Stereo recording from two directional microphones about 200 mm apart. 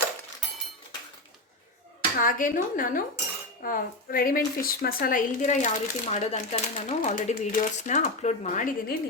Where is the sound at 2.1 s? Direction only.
45° left (ahead or behind).